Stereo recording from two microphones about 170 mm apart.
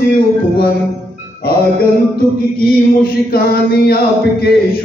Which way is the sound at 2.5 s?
60° left (ahead or behind).